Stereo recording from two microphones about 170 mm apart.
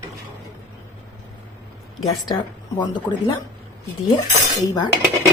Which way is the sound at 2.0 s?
25° left (ahead or behind).